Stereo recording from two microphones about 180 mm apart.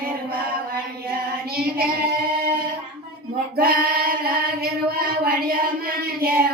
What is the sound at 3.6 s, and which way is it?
Child singing, 55° right (ahead or behind).